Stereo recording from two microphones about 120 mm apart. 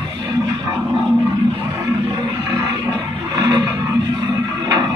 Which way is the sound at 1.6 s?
20° right (ahead or behind).